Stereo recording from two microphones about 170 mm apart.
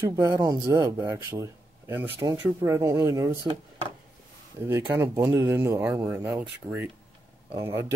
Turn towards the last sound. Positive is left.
turn(degrees=-15)  # may be behind; listen again after turning